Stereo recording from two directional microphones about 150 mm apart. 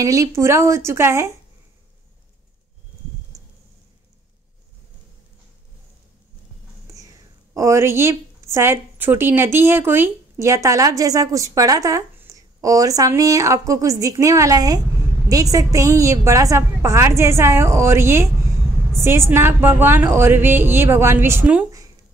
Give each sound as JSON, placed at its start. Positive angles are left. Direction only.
{"t": 0.0, "sound": "speech", "side_deg": -25}
{"t": 7.5, "sound": "a woman's voice", "side_deg": -20}